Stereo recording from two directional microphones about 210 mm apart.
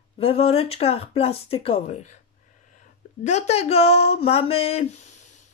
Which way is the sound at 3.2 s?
35° left (ahead or behind).